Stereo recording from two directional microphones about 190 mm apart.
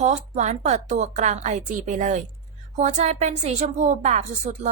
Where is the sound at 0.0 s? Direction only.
40° right (ahead or behind).